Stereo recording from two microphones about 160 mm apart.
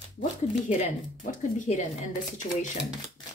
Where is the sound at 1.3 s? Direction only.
50° left (ahead or behind).